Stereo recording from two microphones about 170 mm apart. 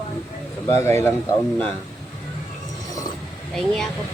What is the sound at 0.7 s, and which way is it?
Speech, 15° left (ahead or behind).